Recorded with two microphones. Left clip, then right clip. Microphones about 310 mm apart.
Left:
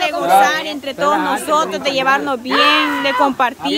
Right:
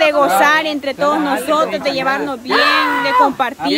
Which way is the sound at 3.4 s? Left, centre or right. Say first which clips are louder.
Left 2 dB; centre.